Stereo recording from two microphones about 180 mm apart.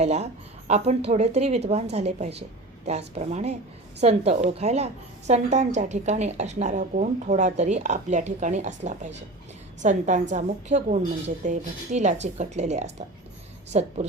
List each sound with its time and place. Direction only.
0.0 s a woman's voice: 40° right (ahead or behind)